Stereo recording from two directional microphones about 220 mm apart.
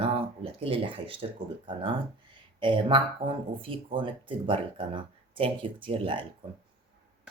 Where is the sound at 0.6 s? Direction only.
25° right (ahead or behind).